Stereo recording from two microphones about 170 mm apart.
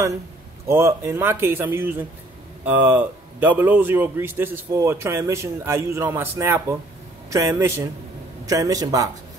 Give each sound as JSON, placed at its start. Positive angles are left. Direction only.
{"t": 0.7, "sound": "a man's voice", "side_deg": -15}